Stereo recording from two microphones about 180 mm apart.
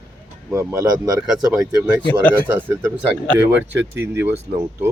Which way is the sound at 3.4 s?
80° right.